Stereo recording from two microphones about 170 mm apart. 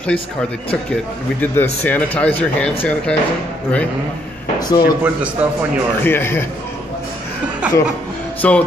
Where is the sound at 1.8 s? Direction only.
10° left (ahead or behind).